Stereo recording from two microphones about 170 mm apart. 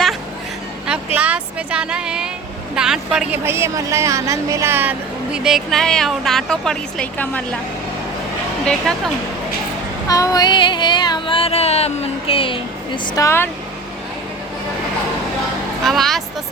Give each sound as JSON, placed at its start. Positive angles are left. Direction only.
{"t": 0.9, "sound": "a woman's voice", "side_deg": -10}
{"t": 10.1, "sound": "a sound", "side_deg": 20}
{"t": 13.1, "sound": "speech", "side_deg": 15}
{"t": 15.8, "sound": "a woman's voice", "side_deg": 0}